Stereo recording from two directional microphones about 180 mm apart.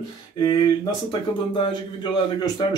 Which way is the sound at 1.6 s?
25° left (ahead or behind).